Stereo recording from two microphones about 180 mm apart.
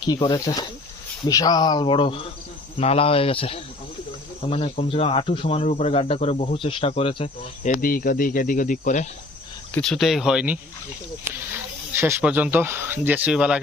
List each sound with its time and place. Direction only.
0.1 s speech: 20° left (ahead or behind)
7.6 s speech: 50° left (ahead or behind)
9.7 s speech: centre (ahead or behind)
11.9 s speech: 10° right (ahead or behind)